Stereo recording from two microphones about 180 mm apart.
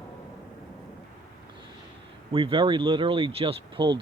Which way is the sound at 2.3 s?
30° right (ahead or behind).